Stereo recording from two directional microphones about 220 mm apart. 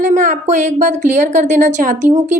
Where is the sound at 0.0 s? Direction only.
35° right (ahead or behind).